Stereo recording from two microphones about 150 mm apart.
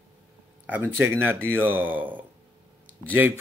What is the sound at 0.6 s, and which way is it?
Speech, 10° right (ahead or behind).